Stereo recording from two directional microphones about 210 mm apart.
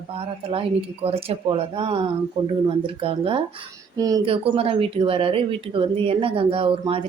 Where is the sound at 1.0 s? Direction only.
25° right (ahead or behind).